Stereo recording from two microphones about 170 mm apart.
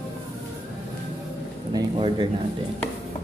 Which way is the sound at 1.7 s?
25° right (ahead or behind).